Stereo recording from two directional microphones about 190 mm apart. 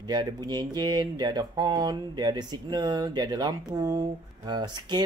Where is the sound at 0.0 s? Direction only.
20° right (ahead or behind).